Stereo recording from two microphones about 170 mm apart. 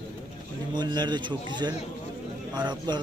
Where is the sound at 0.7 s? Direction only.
25° right (ahead or behind).